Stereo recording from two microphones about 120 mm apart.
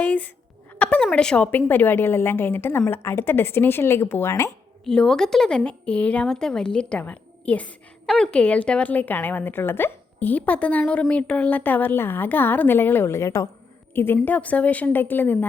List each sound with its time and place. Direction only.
0.0 s a sound: 15° left (ahead or behind)
1.1 s a woman's voice: 10° left (ahead or behind); by 4.5 s 25° left (ahead or behind)
4.9 s speech: 5° left (ahead or behind)